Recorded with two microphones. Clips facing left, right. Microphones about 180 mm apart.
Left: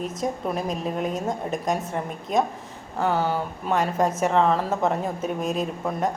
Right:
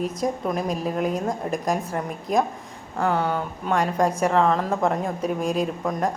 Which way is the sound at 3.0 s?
5° left (ahead or behind).